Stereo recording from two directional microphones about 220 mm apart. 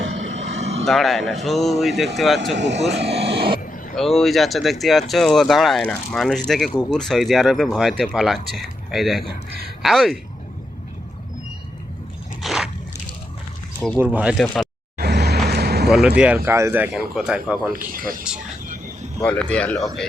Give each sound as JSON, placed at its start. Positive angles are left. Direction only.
{"t": 0.2, "sound": "vehicle", "side_deg": -60}
{"t": 0.5, "sound": "vehicle", "side_deg": -30}
{"t": 0.9, "sound": "speech", "side_deg": 0}
{"t": 2.6, "sound": "speech", "side_deg": -55}
{"t": 2.9, "sound": "speech", "side_deg": -25}
{"t": 3.9, "sound": "speech", "side_deg": 0}
{"t": 12.4, "sound": "a sound", "side_deg": 0}
{"t": 13.7, "sound": "speech", "side_deg": 0}
{"t": 14.9, "sound": "vehicle", "side_deg": -50}
{"t": 15.4, "sound": "a sound", "side_deg": -45}
{"t": 15.9, "sound": "speech", "side_deg": -5}
{"t": 17.9, "sound": "speech", "side_deg": -40}
{"t": 19.2, "sound": "speech", "side_deg": 5}